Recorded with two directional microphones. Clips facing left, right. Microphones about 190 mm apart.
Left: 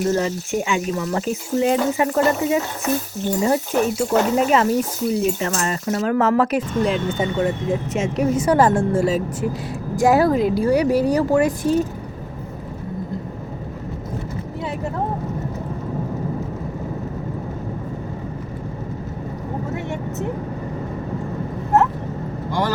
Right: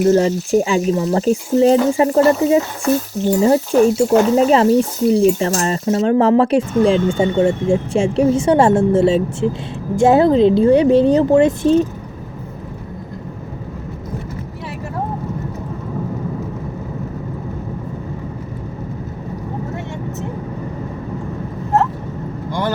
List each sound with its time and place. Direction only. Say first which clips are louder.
0.1 s speech: right 7 dB; 35° right (ahead or behind)